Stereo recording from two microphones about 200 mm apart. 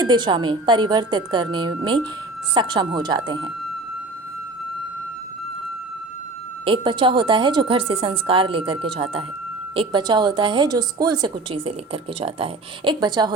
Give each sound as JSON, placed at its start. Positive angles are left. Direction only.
{"t": 0.0, "sound": "a woman's voice", "side_deg": -20}
{"t": 6.7, "sound": "a woman's voice", "side_deg": -25}